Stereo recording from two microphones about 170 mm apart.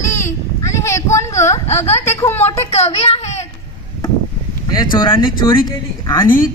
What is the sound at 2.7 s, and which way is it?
Speech, 40° left (ahead or behind).